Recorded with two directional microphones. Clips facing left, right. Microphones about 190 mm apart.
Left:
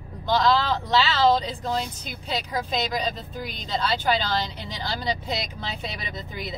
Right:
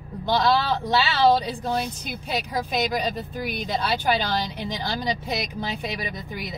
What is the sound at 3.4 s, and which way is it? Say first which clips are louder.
Speech: right 1 dB; 15° right (ahead or behind).